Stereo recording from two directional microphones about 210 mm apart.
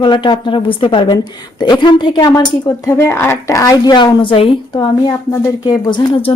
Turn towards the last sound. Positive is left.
turn(degrees=25)  # may be behind; listen again after turning